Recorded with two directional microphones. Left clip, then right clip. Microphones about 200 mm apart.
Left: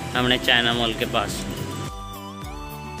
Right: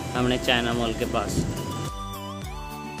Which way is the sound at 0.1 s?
Centre (ahead or behind).